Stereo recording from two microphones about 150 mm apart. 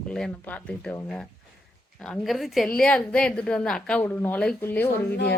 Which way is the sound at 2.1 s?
Centre (ahead or behind).